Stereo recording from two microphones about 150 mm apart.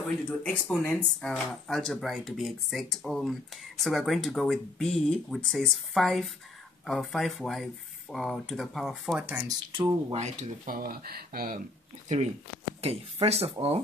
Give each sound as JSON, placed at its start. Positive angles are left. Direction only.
{"t": 0.4, "sound": "speech", "side_deg": 5}
{"t": 9.2, "sound": "speech", "side_deg": -10}
{"t": 9.7, "sound": "speech", "side_deg": -30}
{"t": 10.1, "sound": "speech", "side_deg": -50}
{"t": 10.7, "sound": "speech", "side_deg": -70}
{"t": 12.8, "sound": "speech", "side_deg": -40}